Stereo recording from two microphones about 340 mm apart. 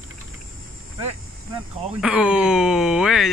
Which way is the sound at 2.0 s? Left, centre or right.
Centre.